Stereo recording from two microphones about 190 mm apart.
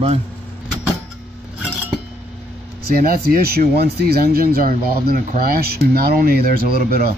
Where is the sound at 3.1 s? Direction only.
50° right (ahead or behind).